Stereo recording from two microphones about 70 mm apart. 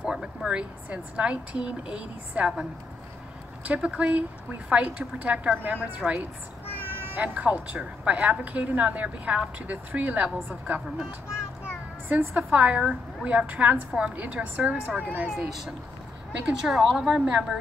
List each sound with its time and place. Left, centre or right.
0.0 s a woman's voice: centre
3.6 s a woman's voice: right
6.9 s cat: right
7.2 s a woman's voice: centre
11.3 s child singing: left
12.1 s a woman's voice: right
16.6 s a woman's voice: centre